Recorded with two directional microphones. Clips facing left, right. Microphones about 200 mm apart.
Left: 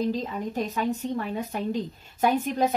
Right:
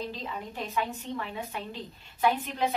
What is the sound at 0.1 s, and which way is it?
Speech, 40° left (ahead or behind).